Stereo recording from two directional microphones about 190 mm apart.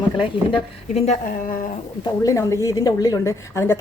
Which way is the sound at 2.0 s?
20° left (ahead or behind).